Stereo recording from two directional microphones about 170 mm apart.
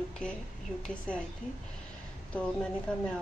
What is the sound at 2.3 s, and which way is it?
Speech, 5° left (ahead or behind).